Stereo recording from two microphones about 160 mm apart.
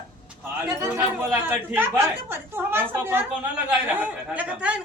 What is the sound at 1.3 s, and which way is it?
Speech, 10° right (ahead or behind).